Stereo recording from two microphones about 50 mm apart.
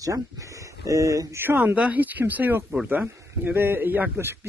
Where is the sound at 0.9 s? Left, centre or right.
Right.